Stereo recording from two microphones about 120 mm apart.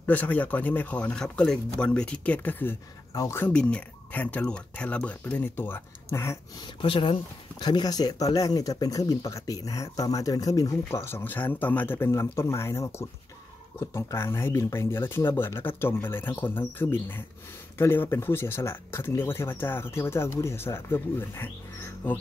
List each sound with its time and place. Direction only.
0.0 s speech: 15° left (ahead or behind)
3.4 s speech: 10° left (ahead or behind)
6.6 s speech: 45° left (ahead or behind); by 22.1 s 15° left (ahead or behind)